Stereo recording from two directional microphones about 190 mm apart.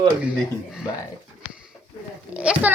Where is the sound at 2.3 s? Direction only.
5° right (ahead or behind).